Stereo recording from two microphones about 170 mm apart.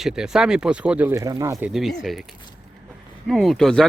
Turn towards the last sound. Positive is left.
turn(degrees=5)  # may be behind; listen again after turning